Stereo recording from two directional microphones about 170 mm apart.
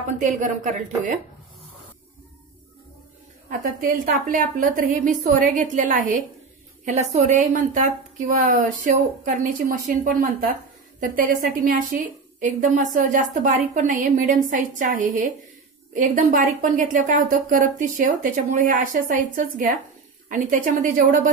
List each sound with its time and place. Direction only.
0.2 s a woman's voice: 50° right (ahead or behind)
3.4 s a woman's voice: 55° right (ahead or behind)